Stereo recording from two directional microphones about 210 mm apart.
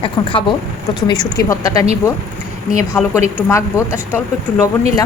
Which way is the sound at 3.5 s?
15° left (ahead or behind).